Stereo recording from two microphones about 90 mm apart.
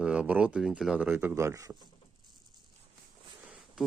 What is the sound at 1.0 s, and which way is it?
Speech, 20° right (ahead or behind).